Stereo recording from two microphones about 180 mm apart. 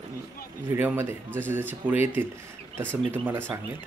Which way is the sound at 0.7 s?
15° right (ahead or behind).